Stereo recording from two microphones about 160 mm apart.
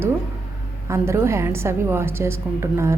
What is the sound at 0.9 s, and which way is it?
A woman's voice, 20° right (ahead or behind).